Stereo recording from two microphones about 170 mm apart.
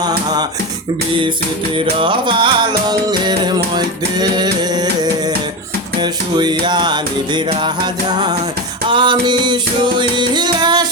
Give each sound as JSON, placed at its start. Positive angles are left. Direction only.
{"t": 2.0, "sound": "music", "side_deg": -30}
{"t": 6.0, "sound": "music", "side_deg": -25}
{"t": 8.9, "sound": "music", "side_deg": -25}